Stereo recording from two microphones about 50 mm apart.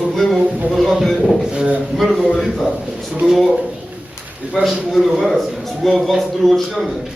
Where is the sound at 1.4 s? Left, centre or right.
Centre.